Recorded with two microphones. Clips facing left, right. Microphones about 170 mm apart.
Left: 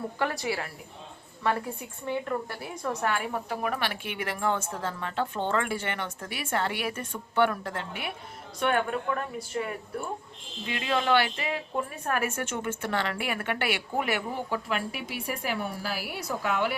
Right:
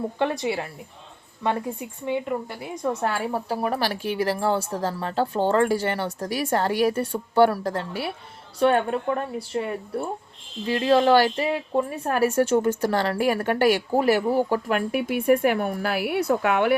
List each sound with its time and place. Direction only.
0.2 s a woman's voice: 25° right (ahead or behind); by 16.7 s 60° right (ahead or behind)